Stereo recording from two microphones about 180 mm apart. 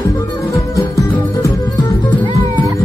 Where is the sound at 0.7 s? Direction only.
15° left (ahead or behind).